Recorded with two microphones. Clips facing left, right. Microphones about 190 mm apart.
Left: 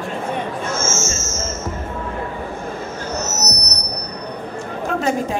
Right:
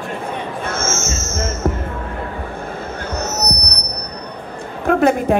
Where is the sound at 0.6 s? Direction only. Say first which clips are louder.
Even; 60° right (ahead or behind).